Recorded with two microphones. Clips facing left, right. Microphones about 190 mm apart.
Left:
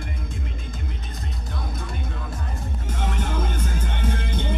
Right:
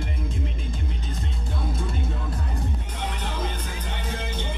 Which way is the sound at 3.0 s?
45° left (ahead or behind).